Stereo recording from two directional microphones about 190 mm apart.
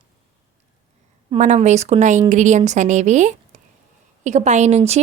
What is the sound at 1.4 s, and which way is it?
Speech, 40° right (ahead or behind).